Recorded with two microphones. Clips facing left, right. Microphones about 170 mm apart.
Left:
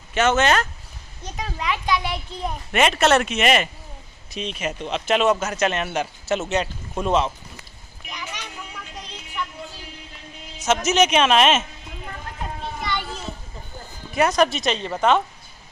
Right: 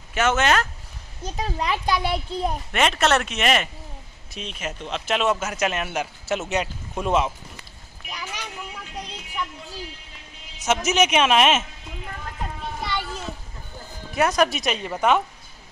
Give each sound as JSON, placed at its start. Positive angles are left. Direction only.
{"t": 0.1, "sound": "speech", "side_deg": -5}
{"t": 1.3, "sound": "a child's voice", "side_deg": -35}
{"t": 2.7, "sound": "speech", "side_deg": 5}
{"t": 10.6, "sound": "speech", "side_deg": -10}
{"t": 14.1, "sound": "speech", "side_deg": 0}